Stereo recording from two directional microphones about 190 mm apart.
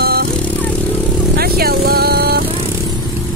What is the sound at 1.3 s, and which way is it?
Vehicle, 55° right (ahead or behind).